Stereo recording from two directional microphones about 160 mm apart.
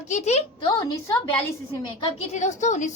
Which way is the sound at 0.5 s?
25° left (ahead or behind).